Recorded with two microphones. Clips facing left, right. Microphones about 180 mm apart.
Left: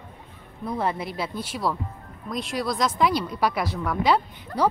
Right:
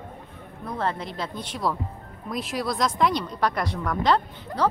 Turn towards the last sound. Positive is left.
turn(degrees=10)  # may be behind; listen again after turning